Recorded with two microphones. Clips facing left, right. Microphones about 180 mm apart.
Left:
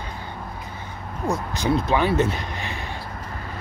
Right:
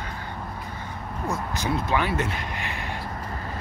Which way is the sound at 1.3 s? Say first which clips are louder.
Left 5 dB; 30° left (ahead or behind).